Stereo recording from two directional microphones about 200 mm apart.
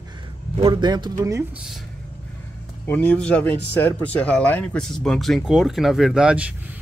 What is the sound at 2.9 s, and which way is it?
Speech, 5° left (ahead or behind).